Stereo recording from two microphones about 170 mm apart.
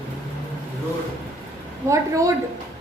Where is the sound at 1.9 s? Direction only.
20° right (ahead or behind).